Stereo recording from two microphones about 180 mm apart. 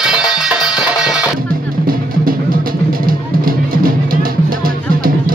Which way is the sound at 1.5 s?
55° right (ahead or behind).